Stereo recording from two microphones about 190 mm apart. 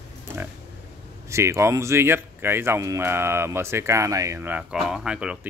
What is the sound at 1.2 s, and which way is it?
Speech, 15° right (ahead or behind).